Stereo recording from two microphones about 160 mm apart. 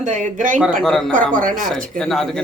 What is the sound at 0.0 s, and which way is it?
Speech, 50° right (ahead or behind).